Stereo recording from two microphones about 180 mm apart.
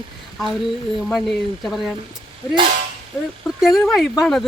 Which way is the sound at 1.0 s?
Centre (ahead or behind).